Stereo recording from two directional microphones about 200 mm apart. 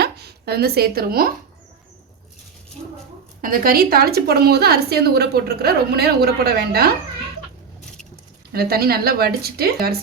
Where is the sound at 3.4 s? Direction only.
45° right (ahead or behind).